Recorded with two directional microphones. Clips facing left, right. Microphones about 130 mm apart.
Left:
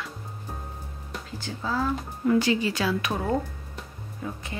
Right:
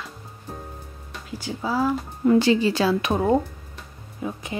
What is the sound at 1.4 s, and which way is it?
Speech, 10° right (ahead or behind).